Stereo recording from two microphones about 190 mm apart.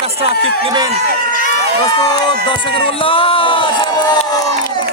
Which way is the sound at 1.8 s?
20° left (ahead or behind).